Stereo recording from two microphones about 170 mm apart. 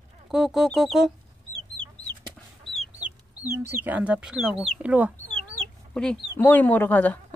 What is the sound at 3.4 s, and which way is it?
Speech, 15° right (ahead or behind).